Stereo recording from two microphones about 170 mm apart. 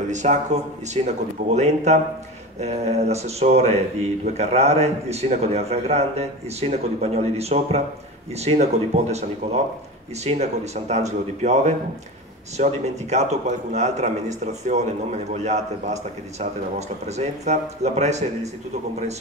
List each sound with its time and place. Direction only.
0.1 s a man's voice: 45° right (ahead or behind)